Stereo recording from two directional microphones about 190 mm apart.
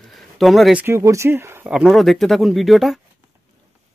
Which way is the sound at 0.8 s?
15° right (ahead or behind).